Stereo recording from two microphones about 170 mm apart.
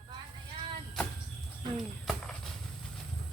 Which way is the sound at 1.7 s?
Centre (ahead or behind).